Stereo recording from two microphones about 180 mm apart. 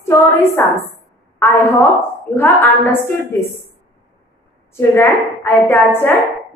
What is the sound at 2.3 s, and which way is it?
A woman's voice, 10° left (ahead or behind).